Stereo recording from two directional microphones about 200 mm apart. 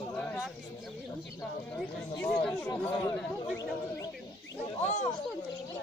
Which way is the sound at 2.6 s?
15° left (ahead or behind).